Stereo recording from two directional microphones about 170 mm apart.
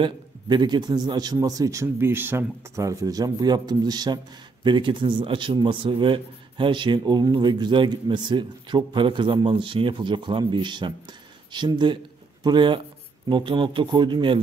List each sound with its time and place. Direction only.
0.0 s a man's voice: 25° right (ahead or behind)